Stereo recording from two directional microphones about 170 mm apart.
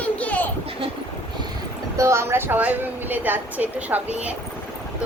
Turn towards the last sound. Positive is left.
turn(degrees=-10)  # may be behind; listen again after turning